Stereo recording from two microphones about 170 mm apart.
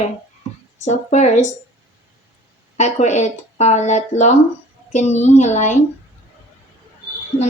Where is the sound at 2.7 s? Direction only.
45° left (ahead or behind).